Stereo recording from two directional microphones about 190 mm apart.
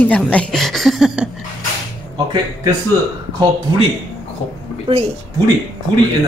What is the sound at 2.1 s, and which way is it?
Speech, 25° right (ahead or behind).